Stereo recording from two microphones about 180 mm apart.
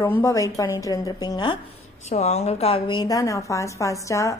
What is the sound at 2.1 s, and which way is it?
A woman's voice, 35° left (ahead or behind).